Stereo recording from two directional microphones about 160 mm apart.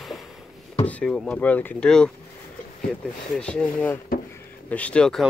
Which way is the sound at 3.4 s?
5° left (ahead or behind).